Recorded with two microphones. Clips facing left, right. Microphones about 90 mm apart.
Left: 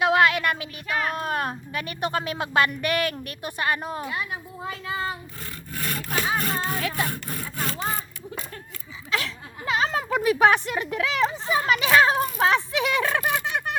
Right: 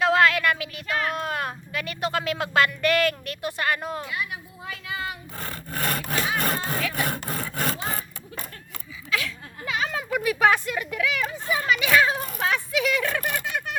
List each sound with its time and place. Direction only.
0.0 s a sound: 20° left (ahead or behind)
0.9 s speech: 20° left (ahead or behind)
5.4 s sawing: 50° right (ahead or behind)
6.4 s speech: 50° right (ahead or behind)
7.1 s sawing: 60° right (ahead or behind)
9.0 s speech: 25° left (ahead or behind)
12.2 s a sound: 30° left (ahead or behind)